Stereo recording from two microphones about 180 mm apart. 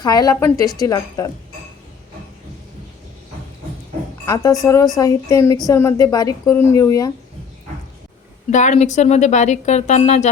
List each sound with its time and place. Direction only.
0.0 s a woman's voice: 20° left (ahead or behind)
4.6 s a woman's voice: 20° left (ahead or behind)
8.4 s a woman's voice: 40° left (ahead or behind)